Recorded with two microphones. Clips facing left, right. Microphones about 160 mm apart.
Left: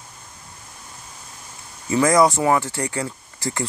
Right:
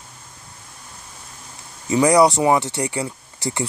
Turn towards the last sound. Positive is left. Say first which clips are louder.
# right 1 dB
turn(degrees=-15)  # may be behind; listen again after turning